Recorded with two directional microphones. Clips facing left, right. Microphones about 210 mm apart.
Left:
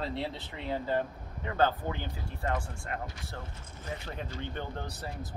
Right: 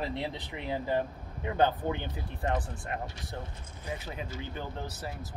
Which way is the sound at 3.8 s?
5° right (ahead or behind).